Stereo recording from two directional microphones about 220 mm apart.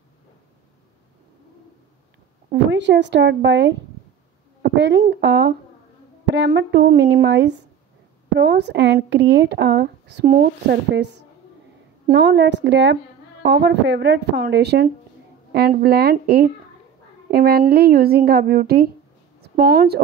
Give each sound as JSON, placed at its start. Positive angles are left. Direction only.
{"t": 2.5, "sound": "a woman's voice", "side_deg": -55}